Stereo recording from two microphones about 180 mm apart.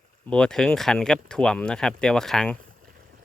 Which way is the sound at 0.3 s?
5° left (ahead or behind).